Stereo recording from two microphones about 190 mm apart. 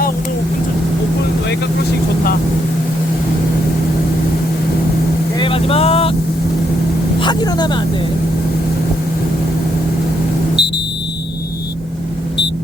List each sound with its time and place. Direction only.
5.4 s vehicle: 30° left (ahead or behind)
7.2 s speech: 20° left (ahead or behind)
10.6 s smoke detector: 60° left (ahead or behind)